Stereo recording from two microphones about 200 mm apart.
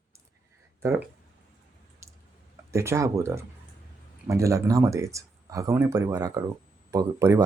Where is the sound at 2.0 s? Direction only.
15° right (ahead or behind).